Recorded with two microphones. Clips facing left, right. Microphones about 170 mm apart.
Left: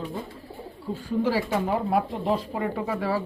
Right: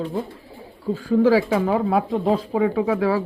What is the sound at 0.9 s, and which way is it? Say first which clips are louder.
Speech: right 8 dB; 90° right.